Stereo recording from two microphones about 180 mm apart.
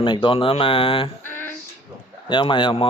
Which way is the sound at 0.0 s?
25° left (ahead or behind).